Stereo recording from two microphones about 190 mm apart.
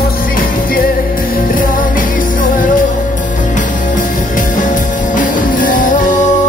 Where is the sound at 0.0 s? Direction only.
50° left (ahead or behind).